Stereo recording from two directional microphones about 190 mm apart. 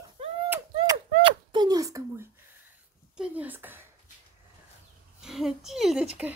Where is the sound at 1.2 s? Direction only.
25° right (ahead or behind).